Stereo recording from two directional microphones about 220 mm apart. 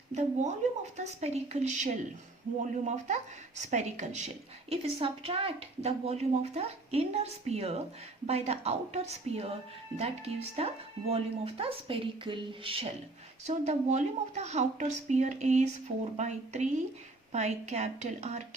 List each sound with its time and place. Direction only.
0.1 s speech: 30° right (ahead or behind)